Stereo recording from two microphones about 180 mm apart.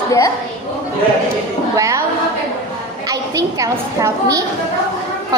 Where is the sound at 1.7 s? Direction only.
20° right (ahead or behind).